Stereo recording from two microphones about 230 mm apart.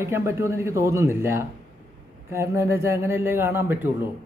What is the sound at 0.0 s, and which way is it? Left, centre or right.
Speech, centre.